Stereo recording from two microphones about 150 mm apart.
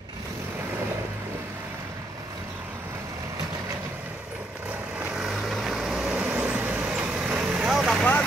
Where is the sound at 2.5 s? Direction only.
15° right (ahead or behind).